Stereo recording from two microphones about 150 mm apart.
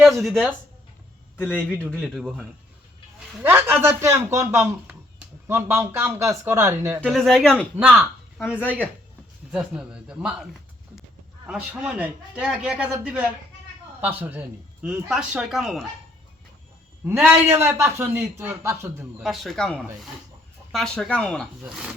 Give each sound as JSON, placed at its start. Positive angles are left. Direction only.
{"t": 0.0, "sound": "speech", "side_deg": 0}
{"t": 1.4, "sound": "a man's voice", "side_deg": 10}
{"t": 3.2, "sound": "a man's voice", "side_deg": -10}
{"t": 7.0, "sound": "speech", "side_deg": 0}
{"t": 7.8, "sound": "a man's voice", "side_deg": -10}
{"t": 9.5, "sound": "a man's voice", "side_deg": -5}
{"t": 17.1, "sound": "a man's voice", "side_deg": -15}
{"t": 19.2, "sound": "speech", "side_deg": 0}
{"t": 21.6, "sound": "speech", "side_deg": -5}